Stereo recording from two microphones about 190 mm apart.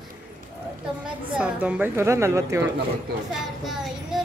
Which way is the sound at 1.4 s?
5° right (ahead or behind).